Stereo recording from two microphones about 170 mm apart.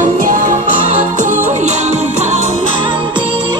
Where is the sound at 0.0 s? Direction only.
50° right (ahead or behind).